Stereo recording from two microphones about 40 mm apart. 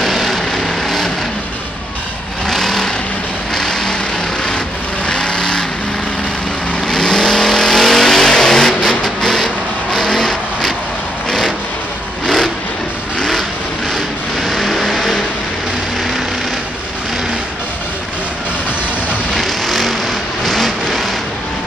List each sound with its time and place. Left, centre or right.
0.0 s vehicle: centre
2.4 s vehicle: centre
5.0 s vehicle: left
6.9 s vehicle: centre
13.9 s vehicle: centre
19.3 s vehicle: centre